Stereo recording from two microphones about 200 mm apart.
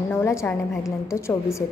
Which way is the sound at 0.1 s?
15° left (ahead or behind).